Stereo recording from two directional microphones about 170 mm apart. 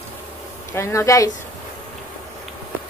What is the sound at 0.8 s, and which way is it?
Speech, 15° left (ahead or behind).